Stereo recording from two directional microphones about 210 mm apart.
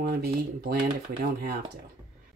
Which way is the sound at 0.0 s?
45° right (ahead or behind).